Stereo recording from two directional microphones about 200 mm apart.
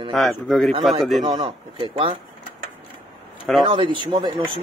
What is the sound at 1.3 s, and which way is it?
Speech, 25° right (ahead or behind).